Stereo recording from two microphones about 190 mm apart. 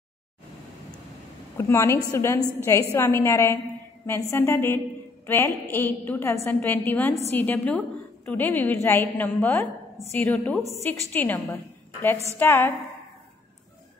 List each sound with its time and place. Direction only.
1.6 s a woman's voice: 15° left (ahead or behind)